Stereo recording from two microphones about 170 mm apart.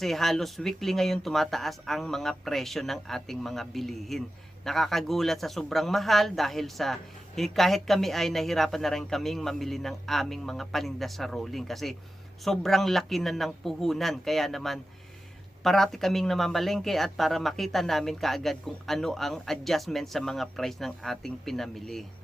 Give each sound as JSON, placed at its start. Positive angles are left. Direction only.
{"t": 0.0, "sound": "a man's voice", "side_deg": 0}